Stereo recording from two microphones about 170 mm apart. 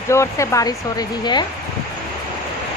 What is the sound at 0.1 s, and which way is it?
Speech, 15° left (ahead or behind).